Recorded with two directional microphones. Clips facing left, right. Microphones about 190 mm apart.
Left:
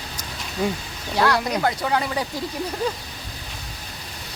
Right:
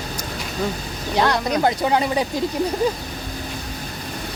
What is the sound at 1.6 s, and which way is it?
Speech, 20° right (ahead or behind).